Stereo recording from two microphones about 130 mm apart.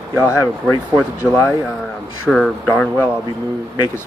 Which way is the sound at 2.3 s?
5° left (ahead or behind).